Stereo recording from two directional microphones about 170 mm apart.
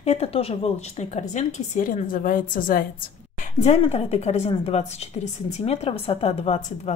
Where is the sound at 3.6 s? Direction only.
40° left (ahead or behind).